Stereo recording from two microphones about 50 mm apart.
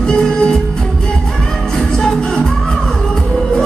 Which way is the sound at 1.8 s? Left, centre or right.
Centre.